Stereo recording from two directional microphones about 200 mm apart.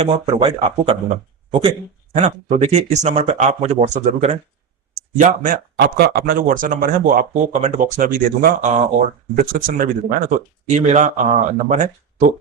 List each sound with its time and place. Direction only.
0.0 s speech: 25° right (ahead or behind)
5.7 s speech: 55° right (ahead or behind); by 12.3 s 35° right (ahead or behind)